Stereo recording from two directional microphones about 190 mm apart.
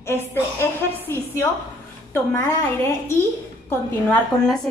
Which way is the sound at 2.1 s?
15° left (ahead or behind).